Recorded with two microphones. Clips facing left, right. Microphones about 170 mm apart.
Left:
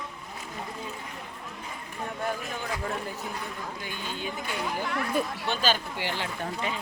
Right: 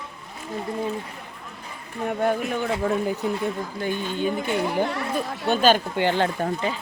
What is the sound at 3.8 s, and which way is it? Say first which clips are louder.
Speech: right 13 dB; 50° right (ahead or behind).